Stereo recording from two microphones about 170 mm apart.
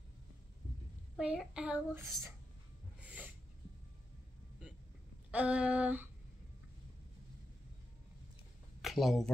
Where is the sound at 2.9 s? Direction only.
10° right (ahead or behind).